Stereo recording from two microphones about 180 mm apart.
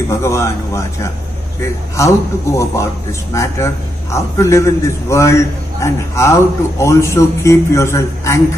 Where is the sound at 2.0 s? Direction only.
15° left (ahead or behind).